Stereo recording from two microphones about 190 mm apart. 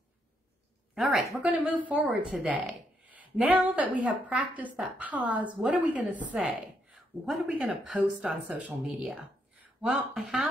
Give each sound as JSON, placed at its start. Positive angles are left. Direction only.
{"t": 0.9, "sound": "a woman's voice", "side_deg": 0}